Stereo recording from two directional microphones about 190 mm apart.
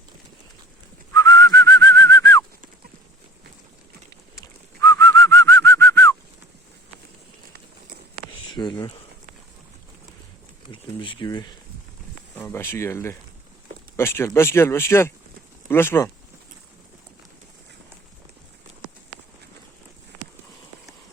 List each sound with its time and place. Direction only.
1.1 s whistling: 15° left (ahead or behind)
4.4 s bird: 15° left (ahead or behind)
8.5 s a sound: 25° left (ahead or behind)
10.7 s speech: 25° left (ahead or behind)